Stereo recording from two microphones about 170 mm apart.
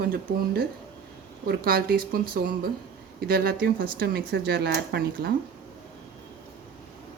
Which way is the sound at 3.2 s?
65° right (ahead or behind).